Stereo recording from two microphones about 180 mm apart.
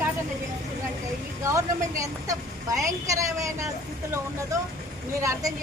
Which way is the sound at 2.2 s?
20° right (ahead or behind).